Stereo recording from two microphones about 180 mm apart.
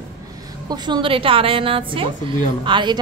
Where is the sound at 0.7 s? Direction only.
25° right (ahead or behind).